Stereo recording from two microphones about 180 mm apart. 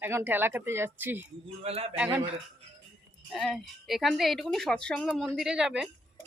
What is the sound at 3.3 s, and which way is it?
Speech, centre (ahead or behind).